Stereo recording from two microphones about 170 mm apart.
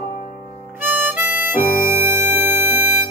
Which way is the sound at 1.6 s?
55° left (ahead or behind).